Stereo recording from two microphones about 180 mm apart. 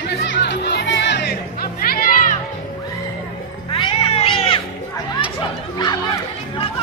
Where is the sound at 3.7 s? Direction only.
30° left (ahead or behind).